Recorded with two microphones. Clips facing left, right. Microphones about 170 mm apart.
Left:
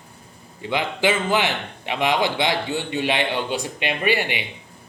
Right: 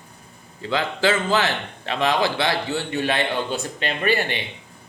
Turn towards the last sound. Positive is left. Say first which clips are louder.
# even
turn(degrees=10)  # may be behind; listen again after turning